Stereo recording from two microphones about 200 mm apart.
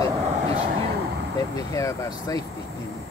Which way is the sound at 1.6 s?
15° left (ahead or behind).